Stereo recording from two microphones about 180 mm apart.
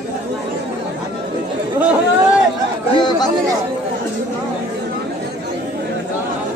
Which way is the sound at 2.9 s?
25° left (ahead or behind).